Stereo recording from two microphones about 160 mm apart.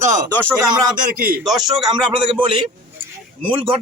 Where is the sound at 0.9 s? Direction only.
60° right (ahead or behind).